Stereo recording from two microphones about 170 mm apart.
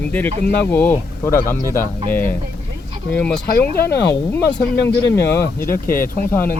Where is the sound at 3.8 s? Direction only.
75° left (ahead or behind).